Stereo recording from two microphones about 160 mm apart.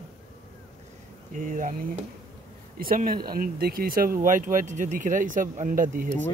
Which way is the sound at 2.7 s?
60° right (ahead or behind).